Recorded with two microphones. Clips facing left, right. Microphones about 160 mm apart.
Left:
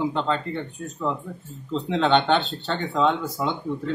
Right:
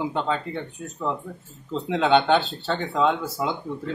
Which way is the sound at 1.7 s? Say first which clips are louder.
Even; 5° right (ahead or behind).